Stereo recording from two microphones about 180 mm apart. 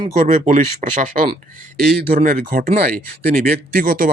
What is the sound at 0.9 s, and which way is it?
Speech, 45° right (ahead or behind).